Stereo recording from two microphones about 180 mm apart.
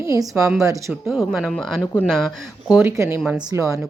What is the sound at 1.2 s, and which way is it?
Speech, centre (ahead or behind).